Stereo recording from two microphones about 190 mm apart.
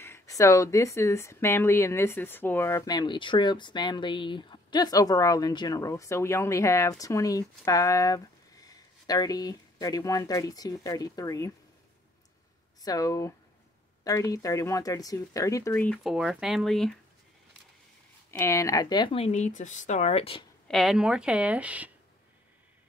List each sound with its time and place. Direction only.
0.0 s speech: 15° left (ahead or behind)
12.8 s speech: 20° left (ahead or behind); by 16.9 s centre (ahead or behind)
18.4 s speech: 15° left (ahead or behind)
20.6 s speech: centre (ahead or behind)